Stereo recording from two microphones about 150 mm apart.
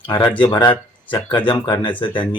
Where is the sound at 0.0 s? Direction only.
30° left (ahead or behind).